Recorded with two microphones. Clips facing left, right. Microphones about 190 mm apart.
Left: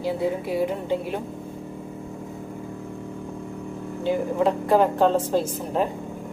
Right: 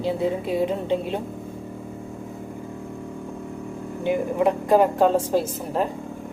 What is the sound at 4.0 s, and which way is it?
A woman's voice, 15° right (ahead or behind).